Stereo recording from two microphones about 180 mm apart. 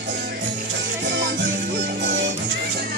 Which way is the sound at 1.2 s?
80° right.